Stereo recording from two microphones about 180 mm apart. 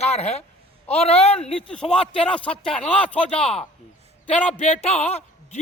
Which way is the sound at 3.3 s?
30° left (ahead or behind).